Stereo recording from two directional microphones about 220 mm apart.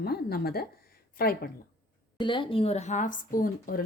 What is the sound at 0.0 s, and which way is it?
A woman's voice, 45° left (ahead or behind).